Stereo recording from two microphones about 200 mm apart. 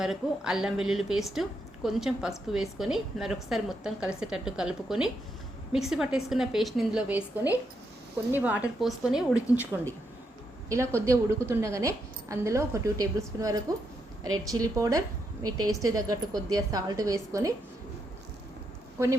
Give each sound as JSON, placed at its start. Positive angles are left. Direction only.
{"t": 0.0, "sound": "a woman's voice", "side_deg": -5}
{"t": 10.7, "sound": "a woman's voice", "side_deg": -15}